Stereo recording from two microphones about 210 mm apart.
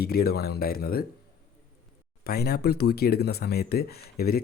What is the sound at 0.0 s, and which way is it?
Speech, 45° left (ahead or behind).